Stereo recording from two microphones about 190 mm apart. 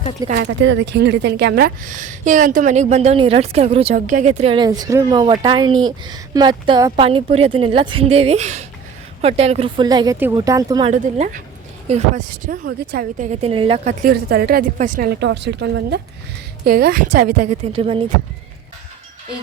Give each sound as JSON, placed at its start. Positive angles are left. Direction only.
{"t": 0.3, "sound": "a woman's voice", "side_deg": -70}
{"t": 3.9, "sound": "a woman's voice", "side_deg": -40}
{"t": 10.9, "sound": "a woman's voice", "side_deg": -45}
{"t": 13.3, "sound": "a woman's voice", "side_deg": -30}
{"t": 14.1, "sound": "a woman's voice", "side_deg": -55}
{"t": 15.3, "sound": "a woman's voice", "side_deg": -65}
{"t": 16.6, "sound": "a woman's voice", "side_deg": -50}